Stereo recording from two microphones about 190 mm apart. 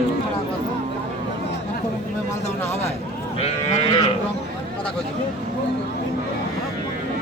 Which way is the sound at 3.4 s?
30° left (ahead or behind).